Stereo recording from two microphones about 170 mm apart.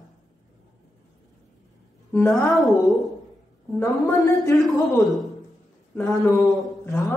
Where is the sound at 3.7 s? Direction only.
20° left (ahead or behind).